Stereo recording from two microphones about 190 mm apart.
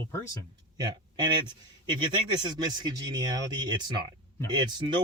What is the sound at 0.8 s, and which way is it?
Speech, 20° right (ahead or behind).